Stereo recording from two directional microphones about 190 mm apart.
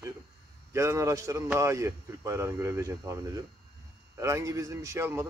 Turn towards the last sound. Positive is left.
turn(degrees=-15)  # may be behind; listen again after turning